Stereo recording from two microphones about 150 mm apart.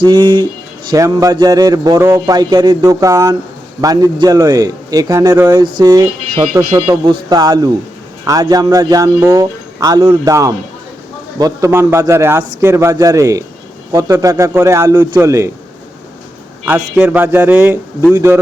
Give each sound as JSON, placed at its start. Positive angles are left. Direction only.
{"t": 0.0, "sound": "a man's voice", "side_deg": -25}
{"t": 16.6, "sound": "a man's voice", "side_deg": -10}